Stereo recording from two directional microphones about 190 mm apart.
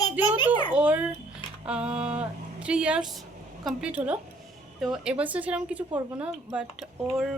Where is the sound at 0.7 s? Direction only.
10° right (ahead or behind).